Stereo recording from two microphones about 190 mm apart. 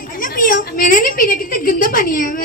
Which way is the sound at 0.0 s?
50° left (ahead or behind).